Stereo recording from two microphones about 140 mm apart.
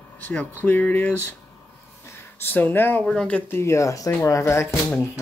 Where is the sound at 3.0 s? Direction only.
5° left (ahead or behind).